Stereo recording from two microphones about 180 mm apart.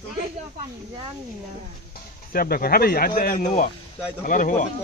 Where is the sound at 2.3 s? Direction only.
55° left (ahead or behind).